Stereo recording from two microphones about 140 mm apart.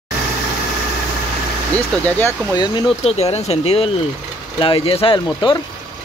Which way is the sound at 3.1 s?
50° left (ahead or behind).